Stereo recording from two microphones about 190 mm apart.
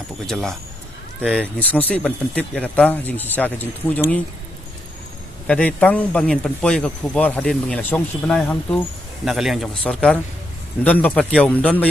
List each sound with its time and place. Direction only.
0.3 s a man's voice: 5° left (ahead or behind)
5.5 s a man's voice: 10° left (ahead or behind)